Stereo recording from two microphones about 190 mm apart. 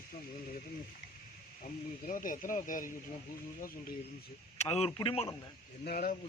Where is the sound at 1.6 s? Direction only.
45° left (ahead or behind).